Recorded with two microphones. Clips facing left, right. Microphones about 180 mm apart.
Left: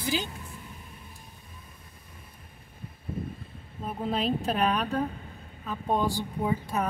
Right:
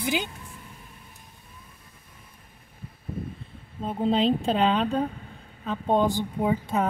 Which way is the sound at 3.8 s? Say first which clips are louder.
Right 6 dB; 25° right (ahead or behind).